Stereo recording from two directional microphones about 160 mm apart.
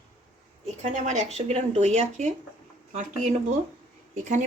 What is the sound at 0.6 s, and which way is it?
Speech, 50° right (ahead or behind).